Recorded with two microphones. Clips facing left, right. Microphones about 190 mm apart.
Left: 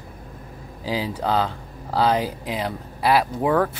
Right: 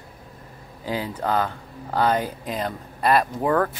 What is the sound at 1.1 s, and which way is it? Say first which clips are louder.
Speech: even; 10° left (ahead or behind).